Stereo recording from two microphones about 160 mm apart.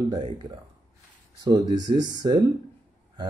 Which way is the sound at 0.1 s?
30° right (ahead or behind).